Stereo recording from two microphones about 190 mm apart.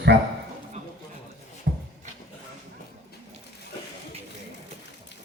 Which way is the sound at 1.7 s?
55° right (ahead or behind).